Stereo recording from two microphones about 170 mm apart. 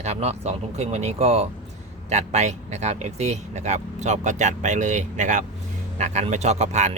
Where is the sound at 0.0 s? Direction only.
40° right (ahead or behind).